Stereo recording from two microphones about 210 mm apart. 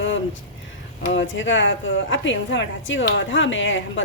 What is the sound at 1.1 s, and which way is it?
A woman's voice, 60° left (ahead or behind).